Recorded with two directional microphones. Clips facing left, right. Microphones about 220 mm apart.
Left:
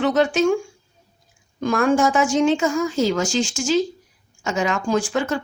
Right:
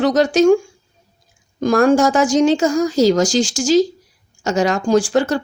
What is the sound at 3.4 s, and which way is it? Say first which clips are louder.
Speech: right 5 dB; 90° right.